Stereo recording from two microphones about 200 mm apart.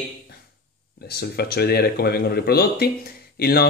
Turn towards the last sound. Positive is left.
turn(degrees=50)  # may be behind; listen again after turning